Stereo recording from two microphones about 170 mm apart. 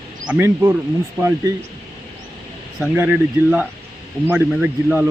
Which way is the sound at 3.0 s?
10° right (ahead or behind).